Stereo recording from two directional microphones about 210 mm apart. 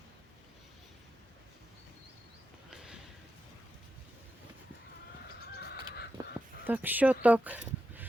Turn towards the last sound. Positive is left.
turn(degrees=-5)  # may be behind; listen again after turning